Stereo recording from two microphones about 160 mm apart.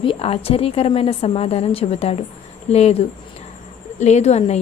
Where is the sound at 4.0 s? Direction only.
45° left (ahead or behind).